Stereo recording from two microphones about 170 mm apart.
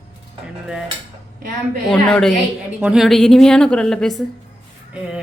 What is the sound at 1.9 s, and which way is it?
Speech, 5° left (ahead or behind).